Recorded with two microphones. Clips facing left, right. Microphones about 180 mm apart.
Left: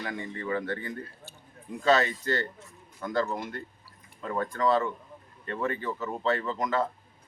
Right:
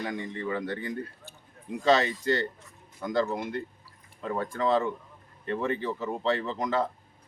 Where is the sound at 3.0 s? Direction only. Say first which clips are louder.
Right 2 dB; 15° right (ahead or behind).